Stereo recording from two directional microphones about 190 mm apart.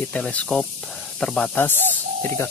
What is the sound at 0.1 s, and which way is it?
Speech, 5° left (ahead or behind).